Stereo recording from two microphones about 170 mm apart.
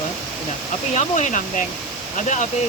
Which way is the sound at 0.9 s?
45° left (ahead or behind).